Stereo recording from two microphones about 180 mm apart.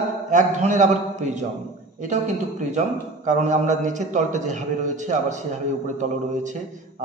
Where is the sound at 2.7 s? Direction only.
40° right (ahead or behind).